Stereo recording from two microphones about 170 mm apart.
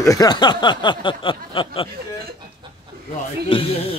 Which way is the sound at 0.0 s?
20° left (ahead or behind).